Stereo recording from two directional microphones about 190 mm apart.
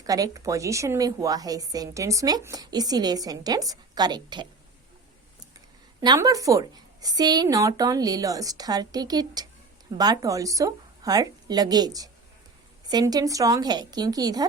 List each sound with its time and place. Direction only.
0.0 s a woman's voice: 20° right (ahead or behind)
6.0 s a woman's voice: 20° right (ahead or behind)